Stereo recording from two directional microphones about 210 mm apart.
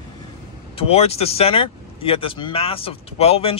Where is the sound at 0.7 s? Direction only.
30° left (ahead or behind).